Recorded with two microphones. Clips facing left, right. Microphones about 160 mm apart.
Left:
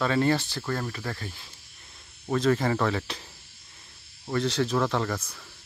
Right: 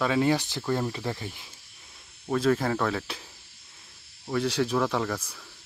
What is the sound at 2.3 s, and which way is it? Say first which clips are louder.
Speech: even; 5° right (ahead or behind).